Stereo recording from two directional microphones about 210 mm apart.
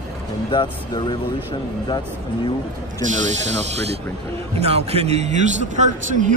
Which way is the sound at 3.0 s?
35° right (ahead or behind).